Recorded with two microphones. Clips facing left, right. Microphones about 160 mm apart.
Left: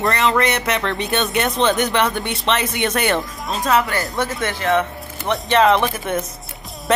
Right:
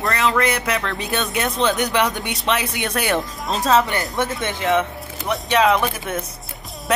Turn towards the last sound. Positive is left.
turn(degrees=0)  # may be behind; listen again after turning